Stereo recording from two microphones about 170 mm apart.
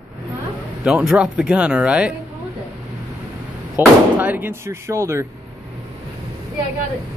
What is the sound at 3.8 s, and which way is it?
Speech, 10° right (ahead or behind).